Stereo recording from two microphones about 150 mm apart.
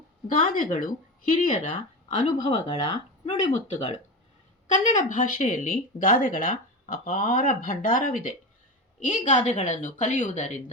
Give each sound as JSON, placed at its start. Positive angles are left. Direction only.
{"t": 0.3, "sound": "speech", "side_deg": 65}
{"t": 2.4, "sound": "speech", "side_deg": 35}
{"t": 3.2, "sound": "speech", "side_deg": 50}
{"t": 4.9, "sound": "speech", "side_deg": 55}